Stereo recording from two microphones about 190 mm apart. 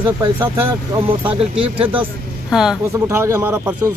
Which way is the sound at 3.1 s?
15° right (ahead or behind).